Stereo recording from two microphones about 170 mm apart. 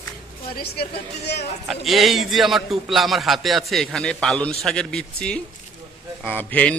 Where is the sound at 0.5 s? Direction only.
70° left (ahead or behind).